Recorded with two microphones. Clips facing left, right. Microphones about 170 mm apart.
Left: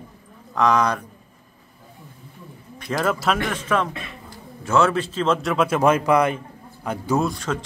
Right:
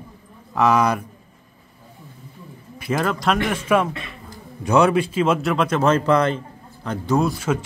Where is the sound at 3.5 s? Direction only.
10° right (ahead or behind); by 7.2 s 10° left (ahead or behind).